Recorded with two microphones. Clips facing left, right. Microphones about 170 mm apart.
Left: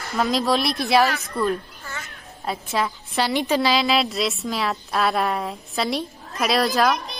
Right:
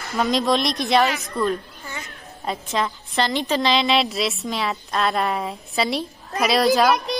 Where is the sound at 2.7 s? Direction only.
5° left (ahead or behind).